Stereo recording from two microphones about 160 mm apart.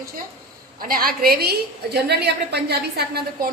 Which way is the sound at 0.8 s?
65° right (ahead or behind).